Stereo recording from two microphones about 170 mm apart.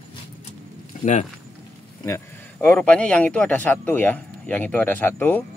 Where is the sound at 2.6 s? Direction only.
5° left (ahead or behind).